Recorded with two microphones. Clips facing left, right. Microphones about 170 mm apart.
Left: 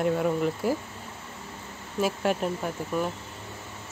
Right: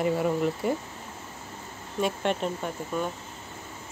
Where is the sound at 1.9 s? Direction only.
5° left (ahead or behind).